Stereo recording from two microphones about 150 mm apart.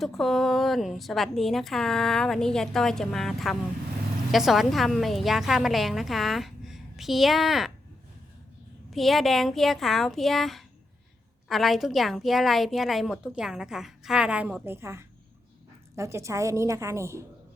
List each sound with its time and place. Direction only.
0.0 s a woman's voice: centre (ahead or behind)
8.9 s a woman's voice: centre (ahead or behind); by 17.2 s 20° right (ahead or behind)